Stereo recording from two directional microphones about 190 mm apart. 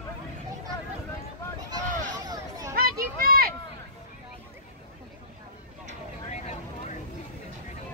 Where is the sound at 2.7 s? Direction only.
50° right (ahead or behind).